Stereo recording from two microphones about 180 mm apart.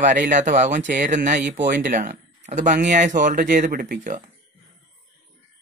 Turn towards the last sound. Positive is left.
turn(degrees=-45)  # may be behind; listen again after turning